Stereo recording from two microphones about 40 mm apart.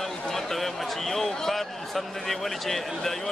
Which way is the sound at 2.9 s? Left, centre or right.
Centre.